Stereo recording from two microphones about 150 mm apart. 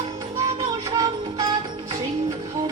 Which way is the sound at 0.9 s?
25° right (ahead or behind).